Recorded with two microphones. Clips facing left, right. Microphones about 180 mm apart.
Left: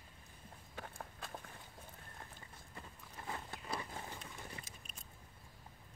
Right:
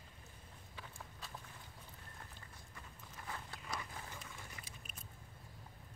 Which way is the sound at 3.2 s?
25° left (ahead or behind).